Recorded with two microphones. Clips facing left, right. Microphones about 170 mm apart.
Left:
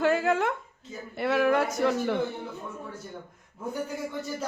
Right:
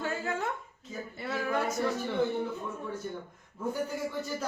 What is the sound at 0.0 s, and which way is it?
Speech, 85° left.